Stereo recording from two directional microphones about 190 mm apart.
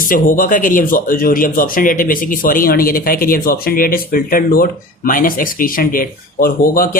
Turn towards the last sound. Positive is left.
turn(degrees=50)  # may be behind; listen again after turning